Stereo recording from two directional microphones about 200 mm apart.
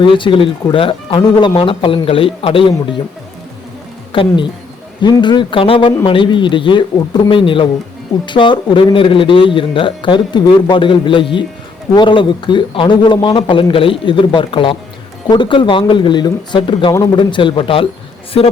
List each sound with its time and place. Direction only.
0.0 s speech: 25° left (ahead or behind)
4.1 s speech: 25° left (ahead or behind)